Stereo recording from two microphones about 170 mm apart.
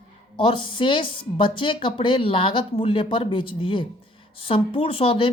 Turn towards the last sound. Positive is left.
turn(degrees=30)  # may be behind; listen again after turning